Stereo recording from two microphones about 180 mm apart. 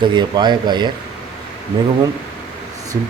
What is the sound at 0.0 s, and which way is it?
Speech, 25° right (ahead or behind).